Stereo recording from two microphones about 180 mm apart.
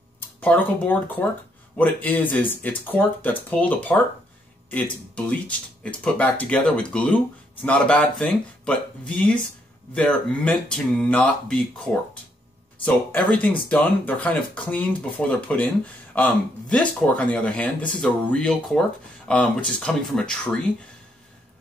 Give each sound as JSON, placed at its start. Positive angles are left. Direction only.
{"t": 0.4, "sound": "speech", "side_deg": 10}